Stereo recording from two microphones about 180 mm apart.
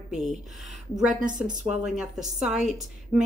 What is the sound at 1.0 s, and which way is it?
Speech, 45° right (ahead or behind).